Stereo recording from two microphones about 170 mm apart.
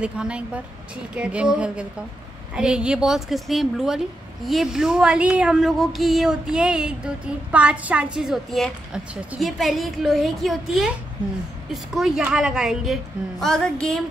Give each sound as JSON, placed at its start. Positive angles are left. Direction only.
{"t": 0.0, "sound": "speech", "side_deg": -5}